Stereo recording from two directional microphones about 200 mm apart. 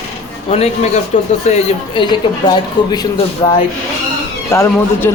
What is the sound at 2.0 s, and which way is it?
Speech, 20° left (ahead or behind).